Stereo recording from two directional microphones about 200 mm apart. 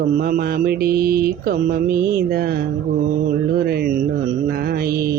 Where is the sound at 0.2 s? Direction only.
45° right (ahead or behind).